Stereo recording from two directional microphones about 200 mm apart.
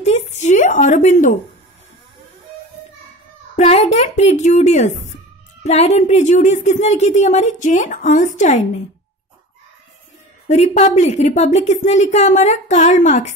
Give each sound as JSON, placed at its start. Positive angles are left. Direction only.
{"t": 0.0, "sound": "a sound", "side_deg": 30}
{"t": 3.5, "sound": "a woman's voice", "side_deg": 30}
{"t": 10.5, "sound": "speech", "side_deg": 35}